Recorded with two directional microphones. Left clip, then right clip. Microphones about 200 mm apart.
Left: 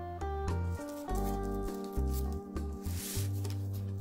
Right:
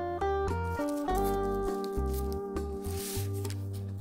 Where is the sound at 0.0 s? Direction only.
Centre (ahead or behind).